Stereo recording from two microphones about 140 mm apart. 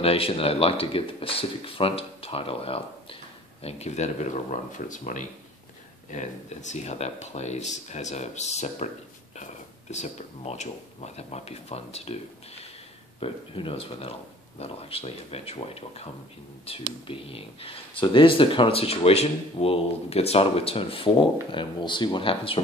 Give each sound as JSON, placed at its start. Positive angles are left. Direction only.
{"t": 0.0, "sound": "speech", "side_deg": 45}
{"t": 13.2, "sound": "speech", "side_deg": 40}